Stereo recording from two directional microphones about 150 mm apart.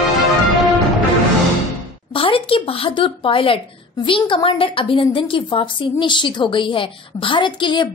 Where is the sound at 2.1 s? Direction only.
35° left (ahead or behind).